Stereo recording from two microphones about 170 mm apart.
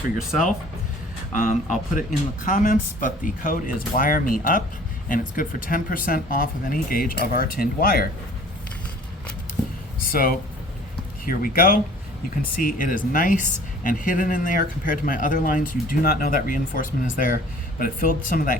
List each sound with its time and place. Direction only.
1.3 s speech: 50° left (ahead or behind)
9.6 s a sound: 5° left (ahead or behind)
10.1 s speech: 55° left (ahead or behind)